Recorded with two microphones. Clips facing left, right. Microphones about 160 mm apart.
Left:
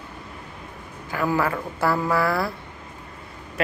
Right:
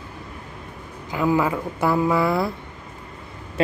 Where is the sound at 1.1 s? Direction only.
15° right (ahead or behind).